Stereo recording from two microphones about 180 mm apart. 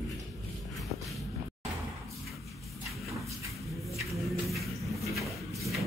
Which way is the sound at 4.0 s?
Centre (ahead or behind).